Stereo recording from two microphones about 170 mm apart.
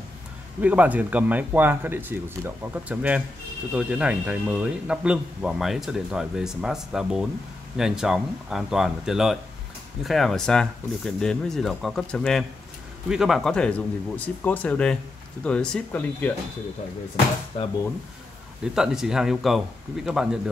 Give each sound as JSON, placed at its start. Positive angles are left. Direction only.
{"t": 0.6, "sound": "a man's voice", "side_deg": -10}
{"t": 17.5, "sound": "speech", "side_deg": 35}
{"t": 18.8, "sound": "a man's voice", "side_deg": -5}